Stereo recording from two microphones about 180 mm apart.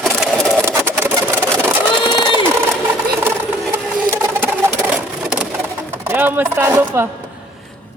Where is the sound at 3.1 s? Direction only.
15° right (ahead or behind).